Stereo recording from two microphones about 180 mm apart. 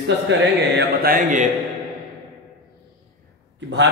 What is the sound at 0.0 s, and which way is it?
Speech, 75° right (ahead or behind).